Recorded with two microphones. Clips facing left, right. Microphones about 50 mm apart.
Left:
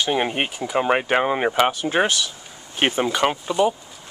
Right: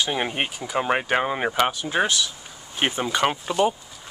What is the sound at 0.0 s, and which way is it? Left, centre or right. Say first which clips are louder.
Speech: left 3 dB; centre.